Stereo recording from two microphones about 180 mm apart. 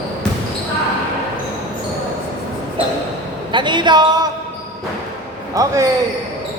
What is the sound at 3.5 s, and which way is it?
Speech, 25° right (ahead or behind).